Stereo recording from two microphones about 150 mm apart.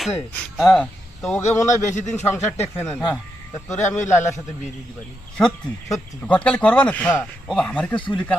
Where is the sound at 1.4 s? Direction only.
20° left (ahead or behind).